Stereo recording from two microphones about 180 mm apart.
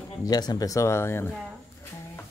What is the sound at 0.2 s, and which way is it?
Speech, 20° left (ahead or behind).